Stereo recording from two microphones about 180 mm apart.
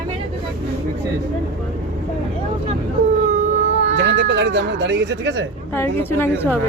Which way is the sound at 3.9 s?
75° right (ahead or behind).